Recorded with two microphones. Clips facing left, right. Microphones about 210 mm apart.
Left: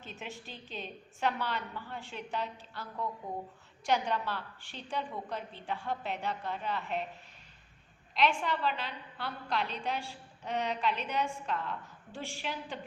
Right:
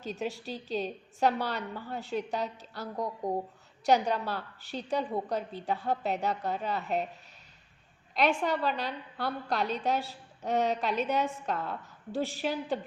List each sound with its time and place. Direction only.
0.0 s a woman's voice: 40° right (ahead or behind)
8.1 s a woman's voice: 40° right (ahead or behind)